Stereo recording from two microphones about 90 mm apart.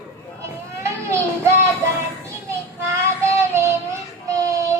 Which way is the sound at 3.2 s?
30° right (ahead or behind).